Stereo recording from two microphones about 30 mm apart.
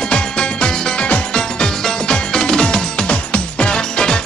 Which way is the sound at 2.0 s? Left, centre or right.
Left.